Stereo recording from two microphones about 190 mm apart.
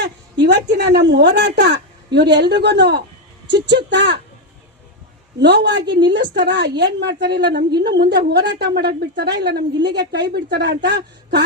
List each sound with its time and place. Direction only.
0.0 s a sound: 65° right (ahead or behind)
0.7 s a woman's voice: 65° right (ahead or behind)
5.4 s a woman's voice: 65° right (ahead or behind)